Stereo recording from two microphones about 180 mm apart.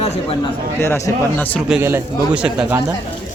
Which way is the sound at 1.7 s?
10° right (ahead or behind).